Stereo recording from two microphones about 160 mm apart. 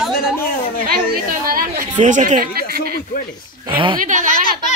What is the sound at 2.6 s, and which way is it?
Speech, 70° right (ahead or behind).